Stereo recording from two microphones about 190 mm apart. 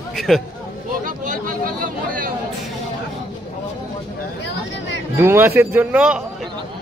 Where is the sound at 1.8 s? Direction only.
45° right (ahead or behind).